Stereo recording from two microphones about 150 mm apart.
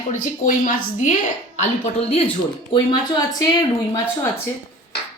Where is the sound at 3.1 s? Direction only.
25° left (ahead or behind).